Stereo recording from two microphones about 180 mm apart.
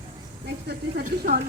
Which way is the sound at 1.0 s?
55° right (ahead or behind).